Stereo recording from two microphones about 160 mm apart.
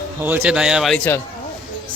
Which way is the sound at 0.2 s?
10° right (ahead or behind).